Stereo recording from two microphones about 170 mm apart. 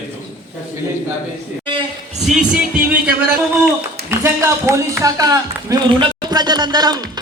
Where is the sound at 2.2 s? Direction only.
5° right (ahead or behind).